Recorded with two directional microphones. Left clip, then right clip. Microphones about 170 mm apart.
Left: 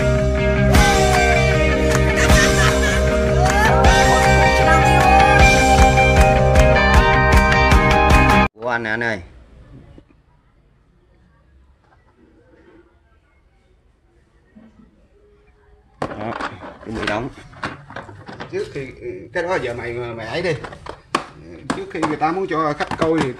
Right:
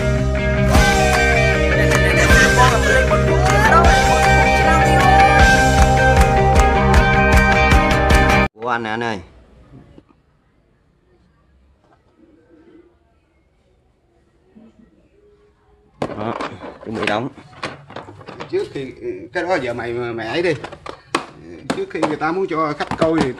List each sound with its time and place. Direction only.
0.0 s music: centre (ahead or behind)
16.2 s skateboard: 30° right (ahead or behind)
16.9 s drawer open or close: 35° right (ahead or behind)
19.3 s speech: 65° right (ahead or behind)
21.1 s a sound: 20° right (ahead or behind)
22.0 s speech: 5° right (ahead or behind)